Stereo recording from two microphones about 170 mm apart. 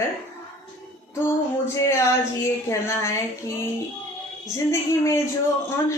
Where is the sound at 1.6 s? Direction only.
15° left (ahead or behind).